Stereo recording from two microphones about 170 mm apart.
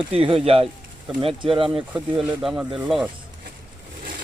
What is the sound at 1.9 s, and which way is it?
Speech, 5° right (ahead or behind).